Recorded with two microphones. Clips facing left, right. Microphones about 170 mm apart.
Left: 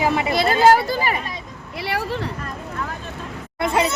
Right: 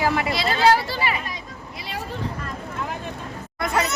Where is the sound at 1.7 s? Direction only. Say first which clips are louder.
Left 8 dB; 70° left (ahead or behind).